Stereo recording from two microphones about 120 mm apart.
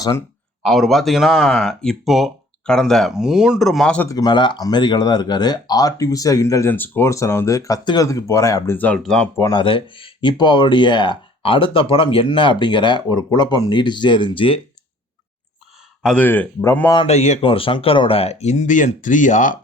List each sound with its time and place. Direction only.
0.0 s speech: 25° left (ahead or behind)
0.6 s speech: centre (ahead or behind)
4.1 s speech: 35° left (ahead or behind); by 9.3 s 10° left (ahead or behind)
9.4 s speech: 40° left (ahead or behind)
16.0 s speech: 15° left (ahead or behind)
17.1 s speech: 75° left (ahead or behind)
17.4 s speech: 50° left (ahead or behind); by 19.5 s 90° left